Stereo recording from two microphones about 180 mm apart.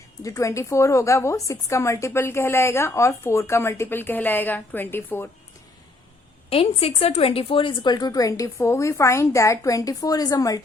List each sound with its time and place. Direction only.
0.2 s a woman's voice: 20° left (ahead or behind)
6.5 s a woman's voice: 30° left (ahead or behind)